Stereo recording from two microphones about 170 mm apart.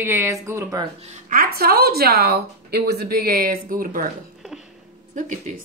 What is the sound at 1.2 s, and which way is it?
A woman's voice, 60° right (ahead or behind).